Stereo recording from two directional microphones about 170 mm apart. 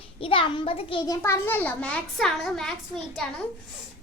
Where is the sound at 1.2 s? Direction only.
15° left (ahead or behind).